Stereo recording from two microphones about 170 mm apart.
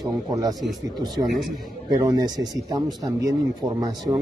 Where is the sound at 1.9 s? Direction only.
25° right (ahead or behind).